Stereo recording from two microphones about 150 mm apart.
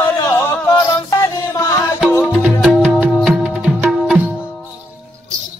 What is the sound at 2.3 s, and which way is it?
Music, 5° right (ahead or behind).